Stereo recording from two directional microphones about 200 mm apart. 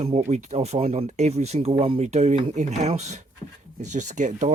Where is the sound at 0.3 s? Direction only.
35° right (ahead or behind).